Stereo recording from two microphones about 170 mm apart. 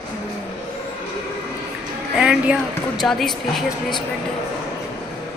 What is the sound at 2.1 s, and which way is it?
A woman's voice, 5° right (ahead or behind).